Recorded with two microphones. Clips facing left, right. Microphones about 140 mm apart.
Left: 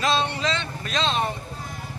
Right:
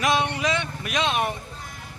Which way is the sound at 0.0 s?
15° right (ahead or behind).